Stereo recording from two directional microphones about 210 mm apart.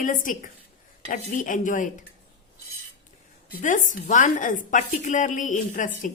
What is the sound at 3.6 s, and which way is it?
A woman's voice, 35° left (ahead or behind).